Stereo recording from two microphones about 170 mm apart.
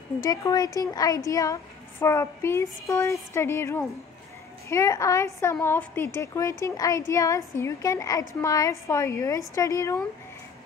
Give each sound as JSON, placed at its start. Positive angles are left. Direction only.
{"t": 0.2, "sound": "a woman's voice", "side_deg": 20}